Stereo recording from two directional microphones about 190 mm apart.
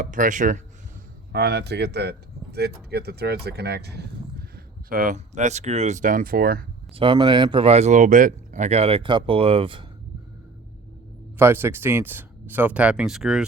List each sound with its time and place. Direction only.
0.0 s speech: 45° right (ahead or behind)
1.3 s speech: 60° right (ahead or behind)
4.5 s speech: 45° right (ahead or behind)
6.9 s speech: 25° right (ahead or behind)
11.3 s speech: 10° right (ahead or behind)